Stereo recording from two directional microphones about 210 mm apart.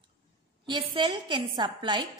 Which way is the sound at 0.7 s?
20° right (ahead or behind).